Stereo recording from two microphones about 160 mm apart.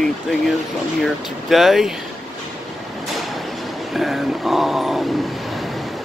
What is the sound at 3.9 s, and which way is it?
Speech, centre (ahead or behind).